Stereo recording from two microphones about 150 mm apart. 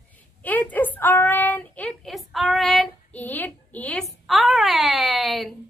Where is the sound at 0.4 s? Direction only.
10° left (ahead or behind).